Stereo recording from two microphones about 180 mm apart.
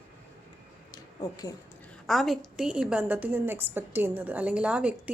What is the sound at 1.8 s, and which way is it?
A woman's voice, 5° left (ahead or behind).